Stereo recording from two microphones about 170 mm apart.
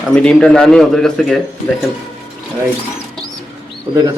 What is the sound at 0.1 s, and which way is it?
Speech, 5° left (ahead or behind).